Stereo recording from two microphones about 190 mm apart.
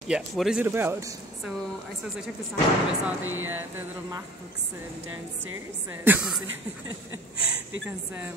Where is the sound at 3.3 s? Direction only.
90° right.